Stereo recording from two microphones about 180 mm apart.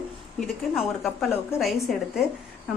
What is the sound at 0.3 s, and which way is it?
A woman's voice, centre (ahead or behind).